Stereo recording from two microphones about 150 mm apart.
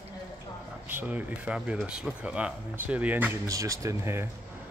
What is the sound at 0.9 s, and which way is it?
Speech, 10° right (ahead or behind).